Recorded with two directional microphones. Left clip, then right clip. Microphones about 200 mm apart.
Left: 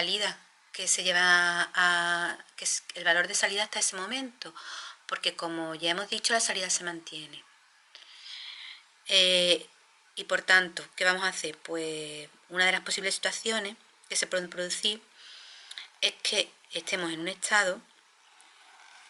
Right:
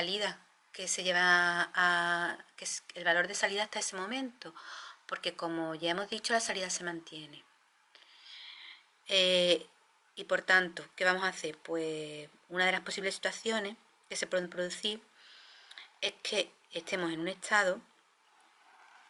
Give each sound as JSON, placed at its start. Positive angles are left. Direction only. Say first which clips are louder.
{"t": 0.0, "sound": "a woman's voice", "louder": "left 5 dB", "side_deg": -5}
{"t": 7.9, "sound": "a sound", "louder": "left 7 dB", "side_deg": -5}
{"t": 10.2, "sound": "a woman's voice", "louder": "left 4 dB", "side_deg": -5}